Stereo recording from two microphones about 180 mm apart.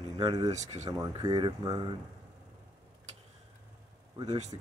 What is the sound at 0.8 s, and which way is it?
Speech, 20° right (ahead or behind).